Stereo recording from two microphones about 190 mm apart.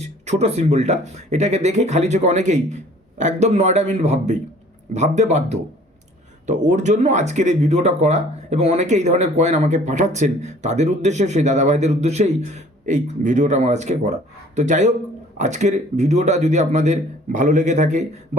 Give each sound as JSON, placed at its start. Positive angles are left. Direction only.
{"t": 0.0, "sound": "speech", "side_deg": -35}